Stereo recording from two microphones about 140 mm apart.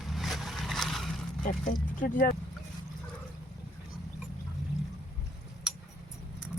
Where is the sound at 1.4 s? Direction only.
75° left (ahead or behind).